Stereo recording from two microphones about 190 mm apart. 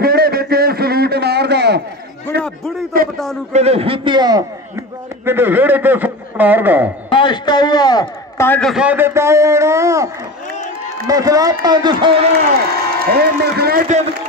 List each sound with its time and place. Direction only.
0.0 s a sound: 55° right (ahead or behind)
2.9 s a sound: 50° right (ahead or behind)
3.5 s a man's voice: 30° right (ahead or behind); by 6.9 s 10° right (ahead or behind)
7.1 s a man's voice: 25° left (ahead or behind)
8.5 s a man's voice: 5° left (ahead or behind); by 12.2 s 25° right (ahead or behind)
13.0 s a man's voice: 55° right (ahead or behind)